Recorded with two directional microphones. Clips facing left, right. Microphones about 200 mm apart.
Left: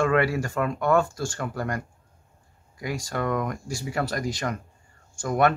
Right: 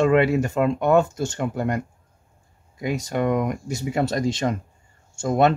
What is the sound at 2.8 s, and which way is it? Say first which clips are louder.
Speech: right 5 dB; 20° right (ahead or behind).